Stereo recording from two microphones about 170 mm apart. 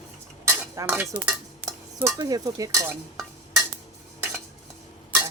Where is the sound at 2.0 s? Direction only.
20° right (ahead or behind).